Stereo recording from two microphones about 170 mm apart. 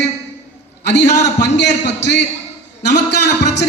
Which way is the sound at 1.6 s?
90° left.